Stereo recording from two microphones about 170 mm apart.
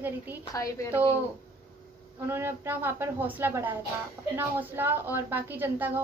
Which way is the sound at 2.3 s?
15° right (ahead or behind).